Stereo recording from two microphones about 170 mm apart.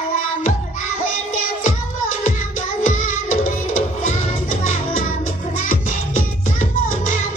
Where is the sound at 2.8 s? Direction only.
55° left (ahead or behind).